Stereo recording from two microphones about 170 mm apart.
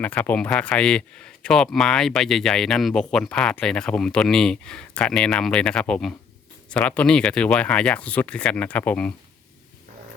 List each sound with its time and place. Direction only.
0.0 s speech: 10° left (ahead or behind)